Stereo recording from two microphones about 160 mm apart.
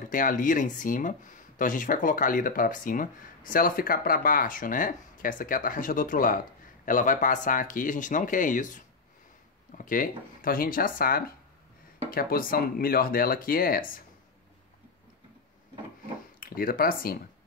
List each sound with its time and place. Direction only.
0.1 s speech: 60° left (ahead or behind)
9.8 s speech: 60° left (ahead or behind)
16.3 s speech: 65° left (ahead or behind)